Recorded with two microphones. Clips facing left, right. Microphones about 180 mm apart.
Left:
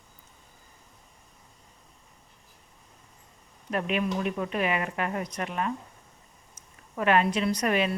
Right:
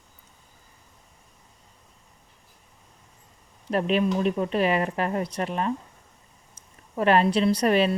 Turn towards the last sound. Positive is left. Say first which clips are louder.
# right 5 dB
turn(degrees=-30)  # may be behind; listen again after turning